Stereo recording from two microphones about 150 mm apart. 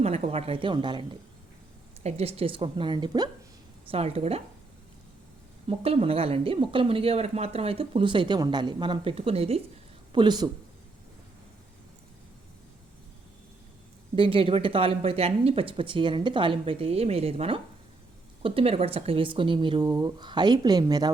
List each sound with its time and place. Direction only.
0.0 s speech: 45° right (ahead or behind)
2.0 s speech: 45° right (ahead or behind)
3.8 s speech: 45° right (ahead or behind)
5.6 s speech: 40° right (ahead or behind)
10.1 s speech: 30° right (ahead or behind)
14.2 s speech: 35° right (ahead or behind)